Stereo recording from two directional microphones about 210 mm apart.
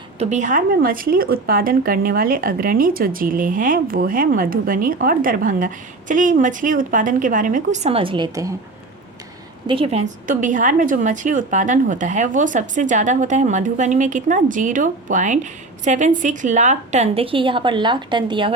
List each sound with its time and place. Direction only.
0.2 s a woman's voice: 35° right (ahead or behind); by 8.5 s 20° right (ahead or behind)
9.6 s a woman's voice: 25° right (ahead or behind)